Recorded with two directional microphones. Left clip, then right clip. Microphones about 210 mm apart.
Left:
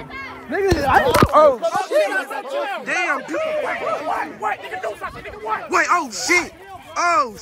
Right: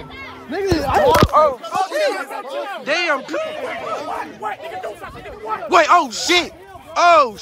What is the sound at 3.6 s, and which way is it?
Speech, 10° left (ahead or behind).